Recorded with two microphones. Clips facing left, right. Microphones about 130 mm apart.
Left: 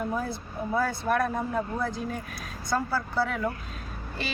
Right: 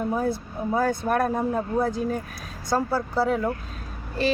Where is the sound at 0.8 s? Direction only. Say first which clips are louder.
Right 3 dB; 45° right (ahead or behind).